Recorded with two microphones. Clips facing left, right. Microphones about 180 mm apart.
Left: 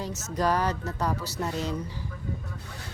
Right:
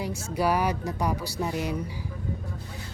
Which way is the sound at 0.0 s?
10° right (ahead or behind).